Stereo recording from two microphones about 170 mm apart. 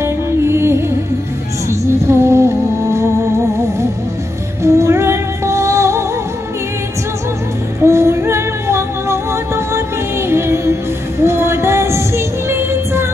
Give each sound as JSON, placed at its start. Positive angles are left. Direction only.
{"t": 0.0, "sound": "music", "side_deg": -15}
{"t": 4.6, "sound": "music", "side_deg": -15}
{"t": 7.8, "sound": "music", "side_deg": -15}